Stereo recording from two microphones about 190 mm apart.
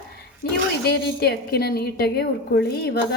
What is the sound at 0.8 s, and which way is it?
A woman's voice, 55° left (ahead or behind).